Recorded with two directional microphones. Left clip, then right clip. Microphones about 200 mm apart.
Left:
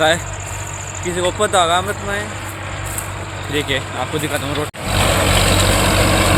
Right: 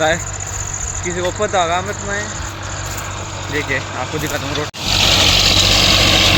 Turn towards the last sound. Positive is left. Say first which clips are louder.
# right 3 dB
turn(degrees=10)  # may be behind; listen again after turning